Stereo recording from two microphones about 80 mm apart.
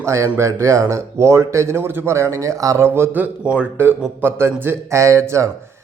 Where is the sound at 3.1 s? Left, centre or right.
Centre; by 5.4 s right.